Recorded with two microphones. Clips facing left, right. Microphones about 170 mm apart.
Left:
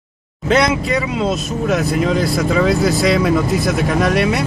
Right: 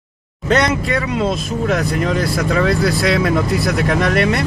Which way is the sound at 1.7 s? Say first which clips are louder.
Left 2 dB; centre (ahead or behind).